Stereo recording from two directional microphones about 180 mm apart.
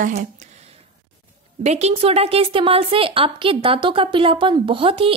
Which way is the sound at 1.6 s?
40° right (ahead or behind).